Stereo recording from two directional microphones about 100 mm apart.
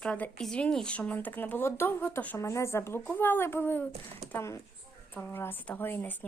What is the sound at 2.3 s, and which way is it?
Speech, 30° left (ahead or behind).